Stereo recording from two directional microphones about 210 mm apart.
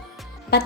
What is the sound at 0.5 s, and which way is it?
Music, 50° left (ahead or behind).